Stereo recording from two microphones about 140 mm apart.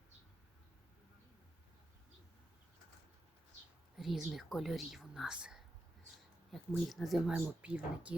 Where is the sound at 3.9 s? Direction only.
Centre (ahead or behind).